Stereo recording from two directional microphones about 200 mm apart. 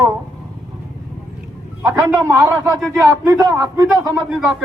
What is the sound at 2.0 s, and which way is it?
A man's voice, 15° right (ahead or behind).